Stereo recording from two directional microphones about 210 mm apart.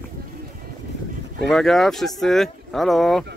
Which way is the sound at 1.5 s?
Centre (ahead or behind).